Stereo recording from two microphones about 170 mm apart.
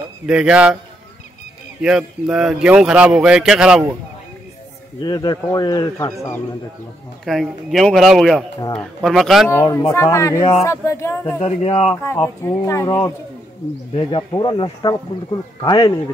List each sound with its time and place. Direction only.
0.3 s a man's voice: 5° right (ahead or behind)
1.8 s a man's voice: 5° right (ahead or behind)
5.0 s speech: 25° left (ahead or behind)
7.2 s a man's voice: centre (ahead or behind)
9.5 s speech: 15° left (ahead or behind)
11.4 s speech: 35° left (ahead or behind)
12.0 s speech: 15° left (ahead or behind)
13.9 s speech: 30° left (ahead or behind)